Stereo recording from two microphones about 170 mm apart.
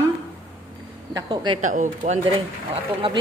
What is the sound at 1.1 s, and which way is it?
Speech, 25° right (ahead or behind).